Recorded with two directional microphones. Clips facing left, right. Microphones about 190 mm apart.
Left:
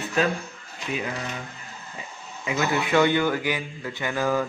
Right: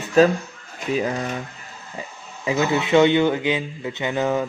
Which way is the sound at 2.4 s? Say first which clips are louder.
Right 4 dB; 20° right (ahead or behind).